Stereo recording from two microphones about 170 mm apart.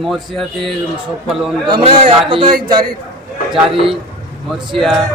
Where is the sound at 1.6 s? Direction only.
30° right (ahead or behind).